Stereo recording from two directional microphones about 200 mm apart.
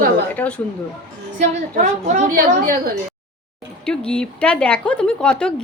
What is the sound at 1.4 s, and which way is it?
A woman's voice, 35° right (ahead or behind).